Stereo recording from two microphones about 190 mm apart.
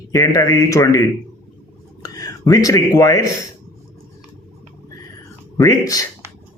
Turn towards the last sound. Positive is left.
turn(degrees=20)  # may be behind; listen again after turning